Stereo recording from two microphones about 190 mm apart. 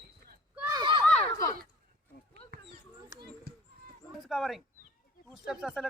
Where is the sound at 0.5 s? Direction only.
10° right (ahead or behind).